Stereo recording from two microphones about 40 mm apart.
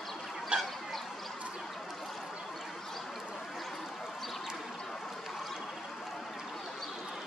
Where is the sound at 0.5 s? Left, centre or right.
Right.